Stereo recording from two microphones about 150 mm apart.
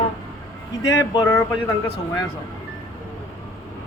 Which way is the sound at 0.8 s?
25° left (ahead or behind).